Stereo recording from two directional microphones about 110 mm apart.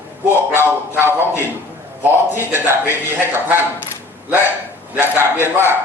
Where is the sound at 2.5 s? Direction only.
20° right (ahead or behind).